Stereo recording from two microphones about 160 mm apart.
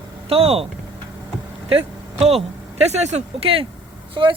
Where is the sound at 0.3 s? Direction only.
40° right (ahead or behind).